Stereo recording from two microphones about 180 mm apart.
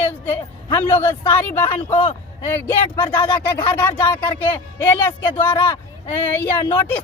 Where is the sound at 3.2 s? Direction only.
25° left (ahead or behind).